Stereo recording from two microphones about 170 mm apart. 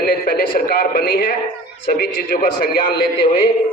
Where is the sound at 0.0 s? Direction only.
60° left (ahead or behind).